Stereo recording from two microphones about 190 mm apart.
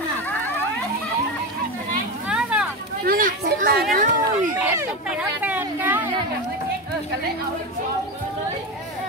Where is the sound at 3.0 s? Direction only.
45° right (ahead or behind).